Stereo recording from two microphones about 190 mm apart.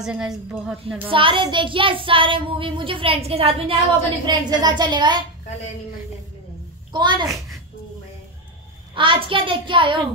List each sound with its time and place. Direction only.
0.0 s a woman's voice: 5° right (ahead or behind)
1.1 s child singing: 25° right (ahead or behind)
6.9 s child singing: 25° right (ahead or behind)
8.9 s child singing: 25° right (ahead or behind)